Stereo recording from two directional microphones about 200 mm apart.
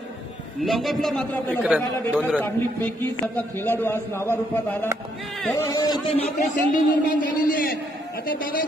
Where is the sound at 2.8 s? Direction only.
10° left (ahead or behind).